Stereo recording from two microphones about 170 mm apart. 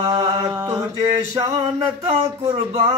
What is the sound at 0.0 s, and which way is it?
Mantra, 25° right (ahead or behind).